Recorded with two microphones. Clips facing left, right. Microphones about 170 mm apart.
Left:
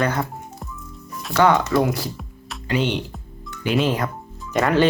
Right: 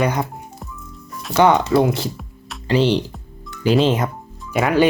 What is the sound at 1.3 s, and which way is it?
Speech, 20° right (ahead or behind).